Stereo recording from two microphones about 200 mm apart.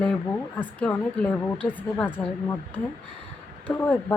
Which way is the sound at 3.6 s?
10° left (ahead or behind).